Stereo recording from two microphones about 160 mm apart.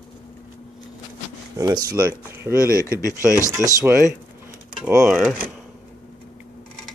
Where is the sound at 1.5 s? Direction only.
20° right (ahead or behind).